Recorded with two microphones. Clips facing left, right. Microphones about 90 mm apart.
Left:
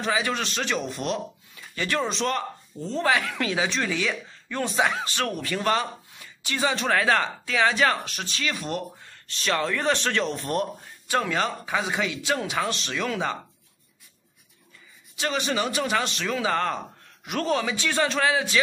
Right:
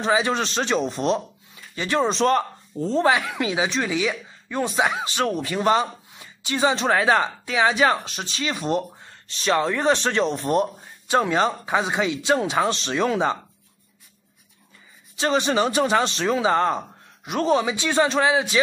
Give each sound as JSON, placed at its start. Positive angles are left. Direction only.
{"t": 0.0, "sound": "a man's voice", "side_deg": -25}
{"t": 2.0, "sound": "speech", "side_deg": -35}
{"t": 3.0, "sound": "a woman's voice", "side_deg": -20}
{"t": 15.1, "sound": "a woman's voice", "side_deg": -30}